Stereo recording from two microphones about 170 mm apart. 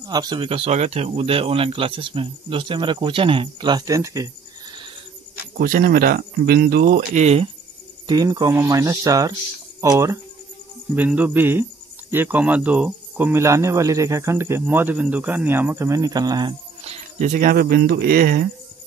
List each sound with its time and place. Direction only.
0.0 s speech: 25° right (ahead or behind)
5.6 s speech: 55° right (ahead or behind)
8.1 s speech: 20° right (ahead or behind)
16.8 s speech: 40° right (ahead or behind); by 18.4 s 60° right (ahead or behind)